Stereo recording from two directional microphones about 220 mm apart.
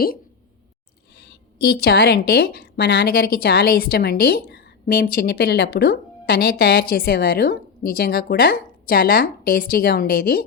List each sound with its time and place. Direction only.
1.6 s a woman's voice: 45° left (ahead or behind)